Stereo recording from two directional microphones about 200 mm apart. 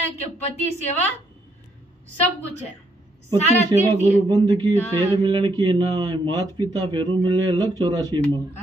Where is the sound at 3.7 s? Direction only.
20° right (ahead or behind).